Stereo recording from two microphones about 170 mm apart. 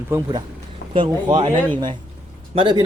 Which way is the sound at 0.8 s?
55° left (ahead or behind).